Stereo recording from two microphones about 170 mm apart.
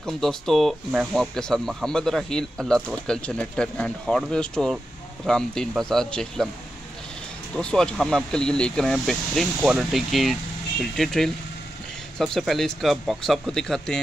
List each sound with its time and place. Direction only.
0.0 s speech: centre (ahead or behind)
7.5 s speech: 5° left (ahead or behind)